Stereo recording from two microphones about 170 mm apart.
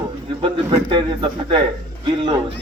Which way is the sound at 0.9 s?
30° right (ahead or behind).